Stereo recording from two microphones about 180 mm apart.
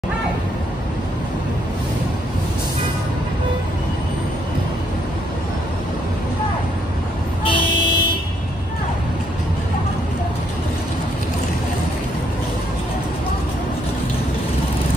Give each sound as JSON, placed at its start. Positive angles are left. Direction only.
{"t": 7.4, "sound": "vehicle", "side_deg": 25}